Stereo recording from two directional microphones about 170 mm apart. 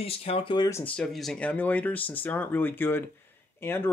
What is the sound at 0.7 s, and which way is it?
Speech, 5° left (ahead or behind).